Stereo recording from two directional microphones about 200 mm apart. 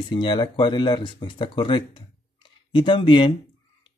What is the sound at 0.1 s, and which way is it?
Speech, 25° left (ahead or behind).